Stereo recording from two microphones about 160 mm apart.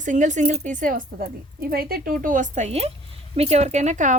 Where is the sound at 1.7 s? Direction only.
70° right (ahead or behind).